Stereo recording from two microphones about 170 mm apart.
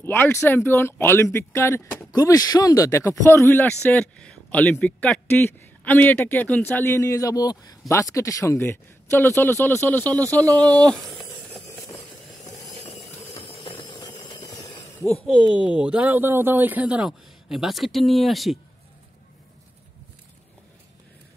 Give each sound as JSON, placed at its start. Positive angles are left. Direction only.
{"t": 0.0, "sound": "speech", "side_deg": 15}
{"t": 12.7, "sound": "a sound", "side_deg": 35}
{"t": 13.7, "sound": "vehicle", "side_deg": 25}
{"t": 15.2, "sound": "speech", "side_deg": -5}